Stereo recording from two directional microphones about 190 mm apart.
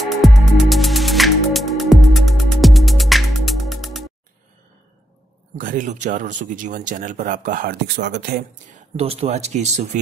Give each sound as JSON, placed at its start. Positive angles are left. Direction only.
{"t": 0.0, "sound": "music", "side_deg": 0}
{"t": 5.6, "sound": "speech", "side_deg": -45}
{"t": 8.7, "sound": "speech", "side_deg": -30}